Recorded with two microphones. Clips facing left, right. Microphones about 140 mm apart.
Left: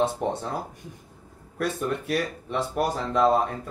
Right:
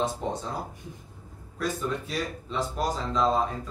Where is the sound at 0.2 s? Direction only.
65° left (ahead or behind).